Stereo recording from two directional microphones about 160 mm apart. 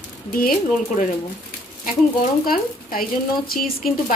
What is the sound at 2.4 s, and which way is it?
Speech, 65° left (ahead or behind).